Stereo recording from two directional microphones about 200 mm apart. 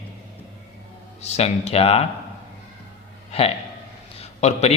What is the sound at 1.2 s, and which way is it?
Speech, 30° left (ahead or behind).